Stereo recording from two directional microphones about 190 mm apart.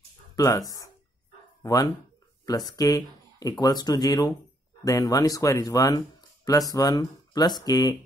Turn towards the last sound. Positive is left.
turn(degrees=20)  # may be behind; listen again after turning